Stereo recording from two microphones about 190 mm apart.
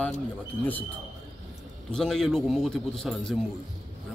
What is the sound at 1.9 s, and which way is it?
A man's voice, centre (ahead or behind).